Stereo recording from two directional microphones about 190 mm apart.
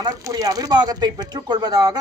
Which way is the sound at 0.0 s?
20° right (ahead or behind).